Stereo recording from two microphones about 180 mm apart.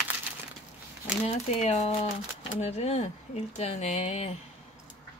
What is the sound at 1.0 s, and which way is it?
Speech, 40° left (ahead or behind).